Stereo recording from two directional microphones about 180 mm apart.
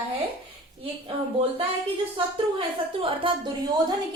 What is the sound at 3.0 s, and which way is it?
Speech, 30° right (ahead or behind).